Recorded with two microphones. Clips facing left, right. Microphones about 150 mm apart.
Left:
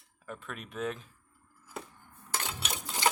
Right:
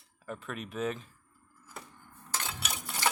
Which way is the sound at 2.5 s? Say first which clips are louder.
Left 1 dB; 25° left (ahead or behind).